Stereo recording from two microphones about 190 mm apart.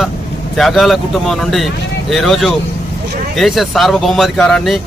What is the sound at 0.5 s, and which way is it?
Speech, centre (ahead or behind).